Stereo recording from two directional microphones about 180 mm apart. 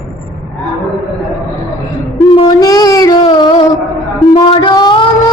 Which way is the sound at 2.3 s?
25° left (ahead or behind).